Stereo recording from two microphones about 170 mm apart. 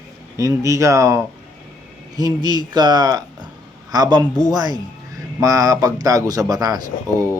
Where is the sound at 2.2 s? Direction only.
25° right (ahead or behind).